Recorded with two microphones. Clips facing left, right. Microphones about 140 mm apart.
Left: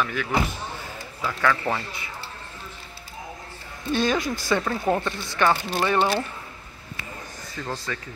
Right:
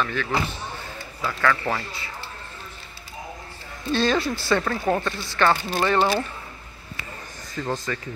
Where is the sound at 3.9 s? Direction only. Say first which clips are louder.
Right 1 dB; 15° left (ahead or behind).